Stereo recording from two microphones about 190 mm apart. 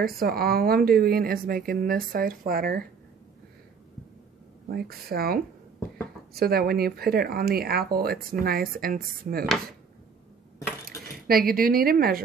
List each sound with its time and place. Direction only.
0.0 s speech: 50° right (ahead or behind)
4.6 s speech: 55° right (ahead or behind)
10.9 s cutlery: 15° left (ahead or behind)
11.2 s speech: 50° right (ahead or behind)